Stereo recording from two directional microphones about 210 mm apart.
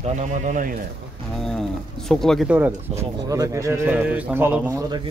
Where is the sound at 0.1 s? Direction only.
35° right (ahead or behind).